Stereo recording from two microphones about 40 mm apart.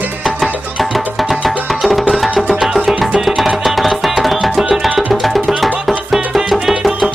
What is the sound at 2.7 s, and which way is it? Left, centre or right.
Music, centre.